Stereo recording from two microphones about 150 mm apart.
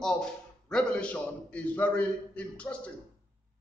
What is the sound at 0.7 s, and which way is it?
A man's voice, 5° left (ahead or behind).